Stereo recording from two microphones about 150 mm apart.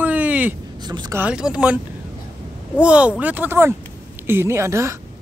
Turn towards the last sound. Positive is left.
turn(degrees=-20)  # may be behind; listen again after turning